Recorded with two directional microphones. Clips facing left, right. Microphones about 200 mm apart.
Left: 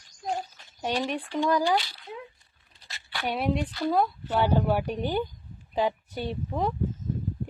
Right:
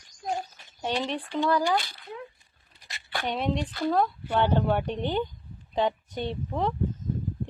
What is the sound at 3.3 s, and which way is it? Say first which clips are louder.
A woman's voice: left 1 dB; 10° left (ahead or behind).